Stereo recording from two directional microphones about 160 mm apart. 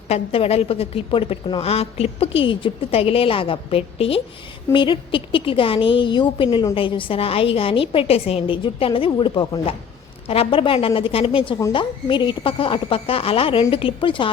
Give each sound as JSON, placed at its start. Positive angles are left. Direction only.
{"t": 0.1, "sound": "a woman's voice", "side_deg": 40}